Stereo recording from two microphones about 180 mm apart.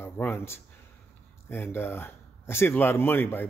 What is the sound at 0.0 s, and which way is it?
Speech, 10° left (ahead or behind).